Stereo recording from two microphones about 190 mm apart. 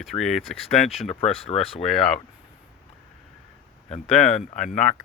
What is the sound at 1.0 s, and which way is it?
Speech, 35° left (ahead or behind).